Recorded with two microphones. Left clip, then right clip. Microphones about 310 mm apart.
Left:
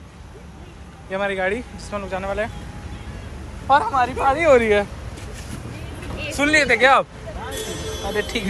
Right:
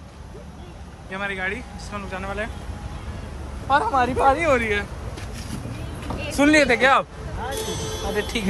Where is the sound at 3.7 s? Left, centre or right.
Centre.